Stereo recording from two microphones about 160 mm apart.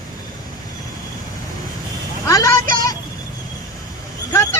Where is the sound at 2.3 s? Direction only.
20° left (ahead or behind).